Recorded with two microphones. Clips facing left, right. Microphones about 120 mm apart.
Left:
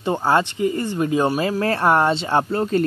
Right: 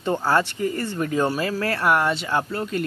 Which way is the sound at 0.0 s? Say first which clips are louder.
Left 2 dB; 20° left (ahead or behind).